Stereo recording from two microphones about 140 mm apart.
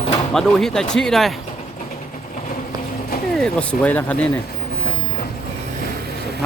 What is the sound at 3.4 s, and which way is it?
Speech, 10° left (ahead or behind).